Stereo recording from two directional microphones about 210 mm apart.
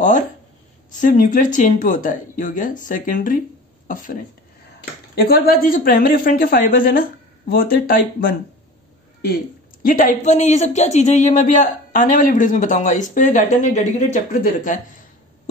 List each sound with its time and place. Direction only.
0.9 s speech: 40° left (ahead or behind)
9.8 s speech: 40° left (ahead or behind)